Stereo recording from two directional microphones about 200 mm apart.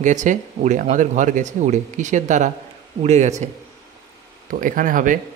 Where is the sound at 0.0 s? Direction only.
40° right (ahead or behind).